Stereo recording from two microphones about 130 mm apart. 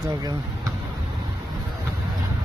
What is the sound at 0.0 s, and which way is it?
Speech, 30° right (ahead or behind).